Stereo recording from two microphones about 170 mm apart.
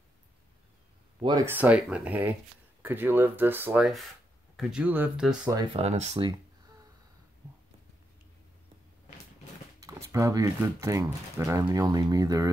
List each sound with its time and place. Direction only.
1.4 s speech: 10° right (ahead or behind)
5.7 s speech: 35° right (ahead or behind)
9.8 s speech: 20° right (ahead or behind)